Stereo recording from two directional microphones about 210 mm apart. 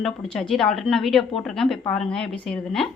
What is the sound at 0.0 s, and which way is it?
A woman's voice, centre (ahead or behind).